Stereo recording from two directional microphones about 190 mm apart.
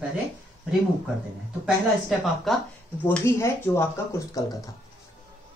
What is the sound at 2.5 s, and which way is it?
Speech, centre (ahead or behind).